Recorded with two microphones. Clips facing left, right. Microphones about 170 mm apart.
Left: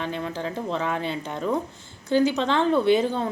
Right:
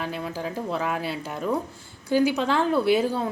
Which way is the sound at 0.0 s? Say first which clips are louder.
Left 1 dB; 5° right (ahead or behind).